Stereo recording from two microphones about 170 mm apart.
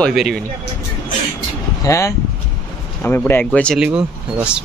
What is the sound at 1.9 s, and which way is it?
Speech, 15° left (ahead or behind).